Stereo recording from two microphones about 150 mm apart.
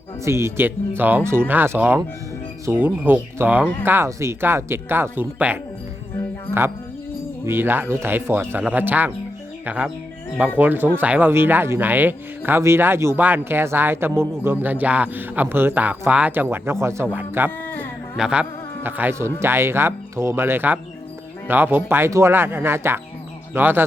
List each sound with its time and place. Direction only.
0.3 s a man's voice: 20° right (ahead or behind)
7.4 s a man's voice: 15° right (ahead or behind)